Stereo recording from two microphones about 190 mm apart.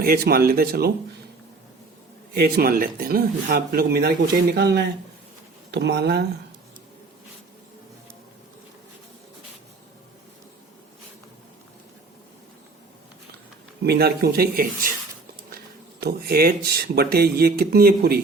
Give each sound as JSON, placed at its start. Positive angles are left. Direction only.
{"t": 0.0, "sound": "speech", "side_deg": -50}
{"t": 2.3, "sound": "speech", "side_deg": -55}
{"t": 13.8, "sound": "speech", "side_deg": -55}